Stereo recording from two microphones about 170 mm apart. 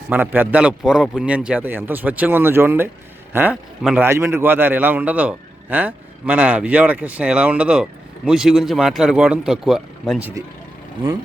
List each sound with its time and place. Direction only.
0.1 s a man's voice: 10° right (ahead or behind)